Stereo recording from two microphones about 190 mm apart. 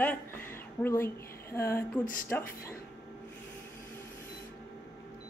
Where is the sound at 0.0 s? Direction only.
10° left (ahead or behind).